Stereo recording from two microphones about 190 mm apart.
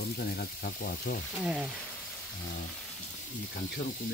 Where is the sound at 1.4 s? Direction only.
5° right (ahead or behind).